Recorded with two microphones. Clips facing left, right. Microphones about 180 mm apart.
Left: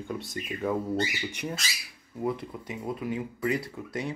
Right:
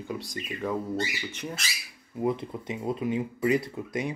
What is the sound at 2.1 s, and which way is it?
Speech, 20° right (ahead or behind).